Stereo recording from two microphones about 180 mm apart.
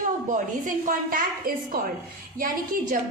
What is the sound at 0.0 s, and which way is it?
A woman's voice, 45° right (ahead or behind).